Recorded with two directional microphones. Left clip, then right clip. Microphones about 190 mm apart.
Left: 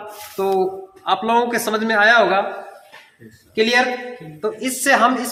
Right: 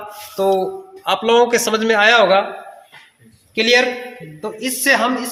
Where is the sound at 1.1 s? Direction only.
40° right (ahead or behind).